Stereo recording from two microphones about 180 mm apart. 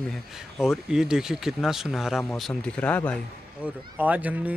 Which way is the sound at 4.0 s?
10° right (ahead or behind).